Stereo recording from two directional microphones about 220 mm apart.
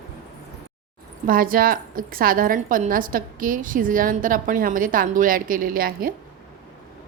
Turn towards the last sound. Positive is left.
turn(degrees=-40)  # may be behind; listen again after turning